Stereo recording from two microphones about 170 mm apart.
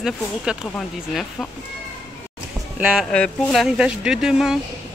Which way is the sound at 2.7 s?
5° right (ahead or behind).